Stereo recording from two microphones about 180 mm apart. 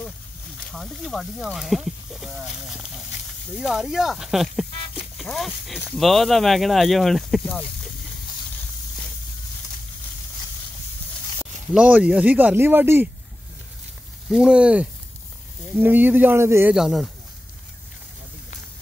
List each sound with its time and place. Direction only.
0.7 s speech: centre (ahead or behind)
11.3 s speech: 5° right (ahead or behind)
14.3 s a man's voice: 5° right (ahead or behind)
16.7 s speech: centre (ahead or behind)